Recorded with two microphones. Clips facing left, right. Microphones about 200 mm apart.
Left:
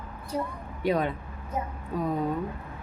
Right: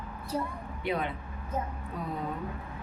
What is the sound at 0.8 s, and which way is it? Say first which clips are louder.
Speech: left 6 dB; 40° left (ahead or behind).